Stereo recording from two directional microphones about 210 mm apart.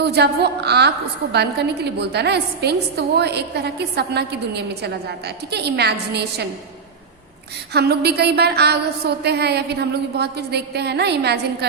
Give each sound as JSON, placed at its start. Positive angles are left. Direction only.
{"t": 0.0, "sound": "a woman's voice", "side_deg": -50}
{"t": 7.7, "sound": "a woman's voice", "side_deg": -50}